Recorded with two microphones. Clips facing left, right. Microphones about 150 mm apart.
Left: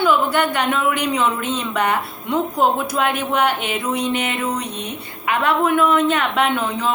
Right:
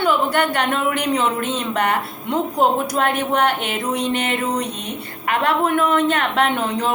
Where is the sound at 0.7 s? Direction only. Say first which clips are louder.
Left 1 dB; 40° right (ahead or behind).